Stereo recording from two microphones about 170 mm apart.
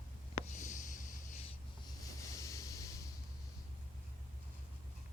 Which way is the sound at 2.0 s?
20° left (ahead or behind).